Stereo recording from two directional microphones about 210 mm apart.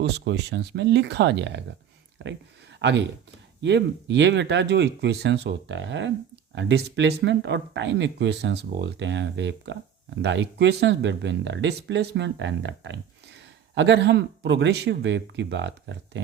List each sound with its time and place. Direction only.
0.0 s speech: 55° right (ahead or behind)
2.7 s speech: 55° right (ahead or behind)